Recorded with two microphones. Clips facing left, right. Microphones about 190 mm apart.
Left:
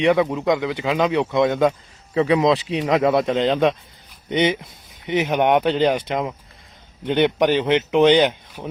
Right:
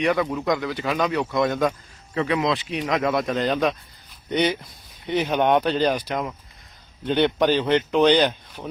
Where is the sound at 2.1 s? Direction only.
30° left (ahead or behind).